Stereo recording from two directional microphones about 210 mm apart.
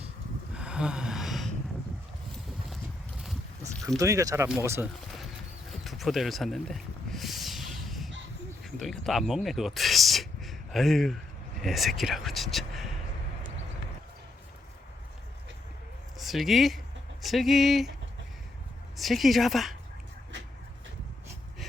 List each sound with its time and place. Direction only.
0.5 s a sound: 5° right (ahead or behind)
3.8 s speech: 15° right (ahead or behind)
5.7 s a sound: centre (ahead or behind)
8.6 s speech: centre (ahead or behind)
16.1 s a woman's voice: centre (ahead or behind)
18.9 s a woman's voice: centre (ahead or behind)